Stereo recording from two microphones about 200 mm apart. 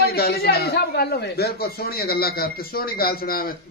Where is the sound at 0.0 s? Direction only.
50° left (ahead or behind).